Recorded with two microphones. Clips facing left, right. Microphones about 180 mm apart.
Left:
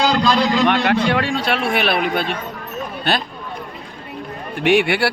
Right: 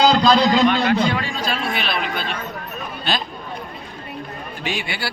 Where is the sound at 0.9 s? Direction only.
70° left (ahead or behind).